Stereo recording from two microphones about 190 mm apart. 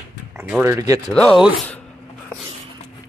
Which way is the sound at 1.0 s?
Centre (ahead or behind).